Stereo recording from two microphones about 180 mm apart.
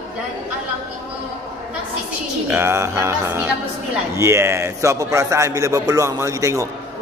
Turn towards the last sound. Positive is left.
turn(degrees=-15)  # may be behind; listen again after turning